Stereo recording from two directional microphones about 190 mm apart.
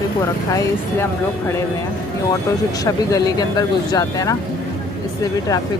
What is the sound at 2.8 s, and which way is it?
Speech, 20° left (ahead or behind).